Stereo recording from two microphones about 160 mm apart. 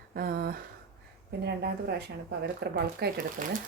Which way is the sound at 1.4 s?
90° right.